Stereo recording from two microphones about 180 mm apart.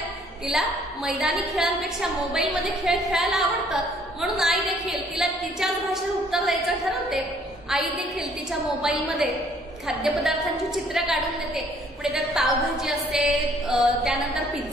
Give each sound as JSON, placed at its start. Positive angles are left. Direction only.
{"t": 0.5, "sound": "a woman's voice", "side_deg": 0}